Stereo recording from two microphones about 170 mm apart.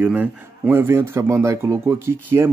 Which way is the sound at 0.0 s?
10° right (ahead or behind).